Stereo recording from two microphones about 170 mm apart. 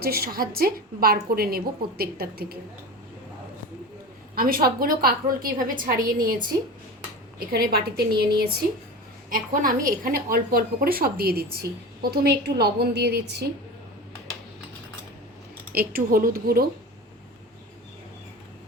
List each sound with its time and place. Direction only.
0.0 s a woman's voice: 60° right (ahead or behind)
4.4 s a woman's voice: 60° right (ahead or behind)
9.3 s a woman's voice: 55° right (ahead or behind); by 13.5 s 75° right (ahead or behind)
15.7 s a woman's voice: 60° right (ahead or behind)